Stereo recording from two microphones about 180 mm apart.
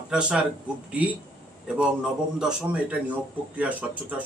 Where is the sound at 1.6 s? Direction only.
5° right (ahead or behind).